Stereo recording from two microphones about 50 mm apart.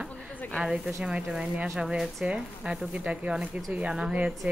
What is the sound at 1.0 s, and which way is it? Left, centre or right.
Speech, centre.